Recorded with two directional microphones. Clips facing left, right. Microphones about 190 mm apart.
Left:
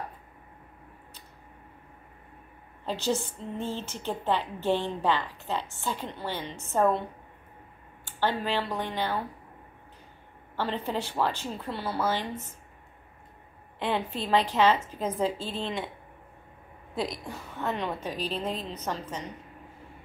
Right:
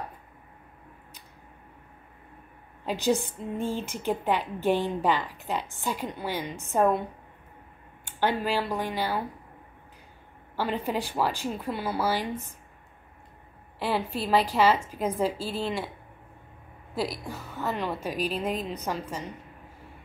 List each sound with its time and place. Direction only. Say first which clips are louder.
2.8 s a woman's voice: right 3 dB; 15° right (ahead or behind)
8.2 s a woman's voice: right 2 dB; 10° right (ahead or behind)
10.5 s a woman's voice: right 2 dB; 10° right (ahead or behind)
13.7 s a woman's voice: right 1 dB; 5° right (ahead or behind)
16.9 s a woman's voice: right 1 dB; 5° right (ahead or behind)